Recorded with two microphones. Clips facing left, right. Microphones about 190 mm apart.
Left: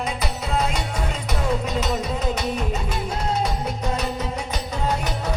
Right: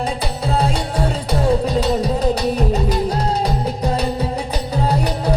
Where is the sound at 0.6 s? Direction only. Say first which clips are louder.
Right 6 dB; 30° right (ahead or behind).